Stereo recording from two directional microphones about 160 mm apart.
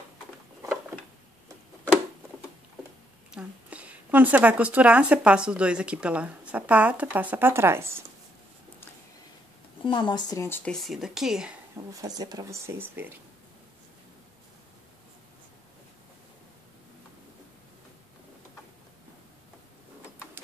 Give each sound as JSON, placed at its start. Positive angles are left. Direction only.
{"t": 3.3, "sound": "a woman's voice", "side_deg": -5}
{"t": 9.8, "sound": "speech", "side_deg": 30}
{"t": 10.3, "sound": "speech", "side_deg": 15}
{"t": 11.7, "sound": "speech", "side_deg": -20}